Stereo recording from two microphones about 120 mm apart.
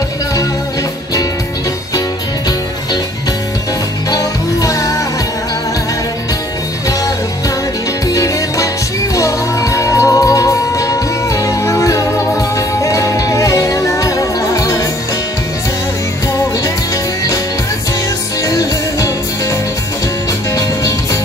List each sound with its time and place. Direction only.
4.1 s music: 30° left (ahead or behind)
8.1 s music: 30° left (ahead or behind)
18.4 s music: 30° left (ahead or behind)
20.5 s music: 30° left (ahead or behind)